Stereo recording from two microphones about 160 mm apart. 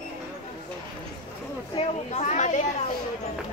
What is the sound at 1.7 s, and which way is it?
Speech, 40° left (ahead or behind).